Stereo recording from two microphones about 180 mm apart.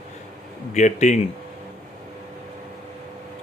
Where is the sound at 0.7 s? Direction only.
40° left (ahead or behind).